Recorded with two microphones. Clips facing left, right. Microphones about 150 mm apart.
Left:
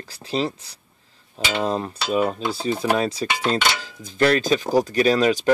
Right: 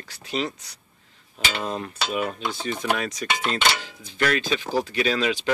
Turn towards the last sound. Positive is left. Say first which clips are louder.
# left 6 dB
turn(degrees=40)  # may be behind; listen again after turning